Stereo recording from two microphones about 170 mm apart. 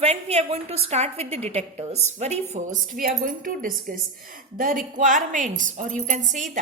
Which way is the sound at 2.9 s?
55° right (ahead or behind).